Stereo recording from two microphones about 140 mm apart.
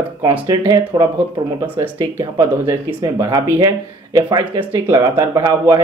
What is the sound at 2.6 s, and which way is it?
Speech, 20° right (ahead or behind).